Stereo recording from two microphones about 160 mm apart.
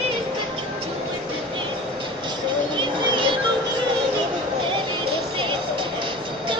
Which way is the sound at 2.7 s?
30° right (ahead or behind).